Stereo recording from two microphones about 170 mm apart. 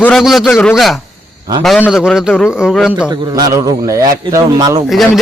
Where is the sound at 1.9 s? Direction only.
5° right (ahead or behind).